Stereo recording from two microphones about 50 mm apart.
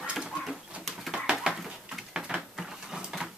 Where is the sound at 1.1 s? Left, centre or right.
Centre.